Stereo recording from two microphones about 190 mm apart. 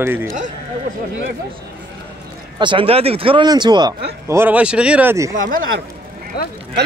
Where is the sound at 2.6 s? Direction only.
25° right (ahead or behind).